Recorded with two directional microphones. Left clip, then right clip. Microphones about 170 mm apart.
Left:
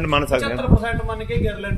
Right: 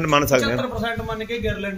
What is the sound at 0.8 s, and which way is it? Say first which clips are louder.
Speech: even; centre (ahead or behind).